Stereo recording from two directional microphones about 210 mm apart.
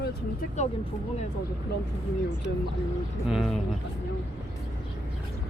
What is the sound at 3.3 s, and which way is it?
Speech, centre (ahead or behind).